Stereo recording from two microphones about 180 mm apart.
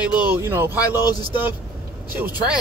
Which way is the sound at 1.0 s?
20° left (ahead or behind).